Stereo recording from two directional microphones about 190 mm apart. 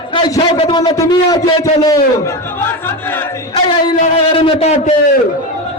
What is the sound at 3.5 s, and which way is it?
A man's voice, 30° left (ahead or behind).